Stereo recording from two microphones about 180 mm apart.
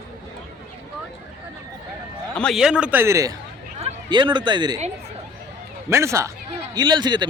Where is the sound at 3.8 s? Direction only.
25° right (ahead or behind).